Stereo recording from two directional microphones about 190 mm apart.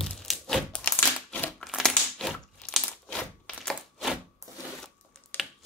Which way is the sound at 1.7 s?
Centre (ahead or behind).